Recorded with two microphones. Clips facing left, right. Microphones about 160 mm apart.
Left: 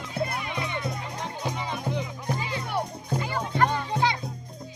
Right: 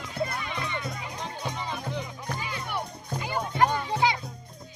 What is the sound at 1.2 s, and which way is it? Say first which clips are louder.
Music: left 2 dB; 15° left (ahead or behind).